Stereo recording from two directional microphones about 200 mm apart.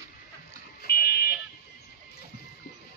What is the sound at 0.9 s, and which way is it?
Fire alarm, 45° left (ahead or behind).